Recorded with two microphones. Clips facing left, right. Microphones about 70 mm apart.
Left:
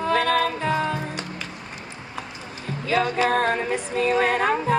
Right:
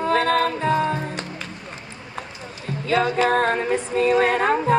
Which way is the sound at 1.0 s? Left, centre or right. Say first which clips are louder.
Right 1 dB; centre.